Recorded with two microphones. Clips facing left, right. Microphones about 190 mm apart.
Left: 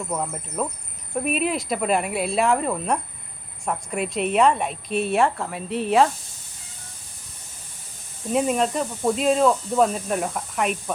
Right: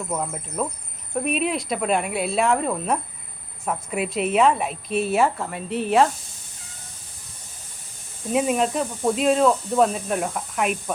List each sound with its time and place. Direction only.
0.1 s speech: centre (ahead or behind)
8.3 s speech: centre (ahead or behind)